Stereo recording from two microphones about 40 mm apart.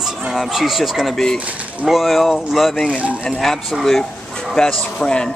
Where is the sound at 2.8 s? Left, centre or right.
Right.